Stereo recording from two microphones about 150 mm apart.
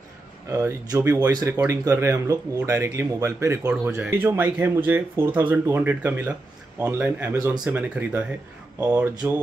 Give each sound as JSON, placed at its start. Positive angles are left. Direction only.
{"t": 0.5, "sound": "speech", "side_deg": -20}
{"t": 7.3, "sound": "speech", "side_deg": -25}
{"t": 7.6, "sound": "speech", "side_deg": -10}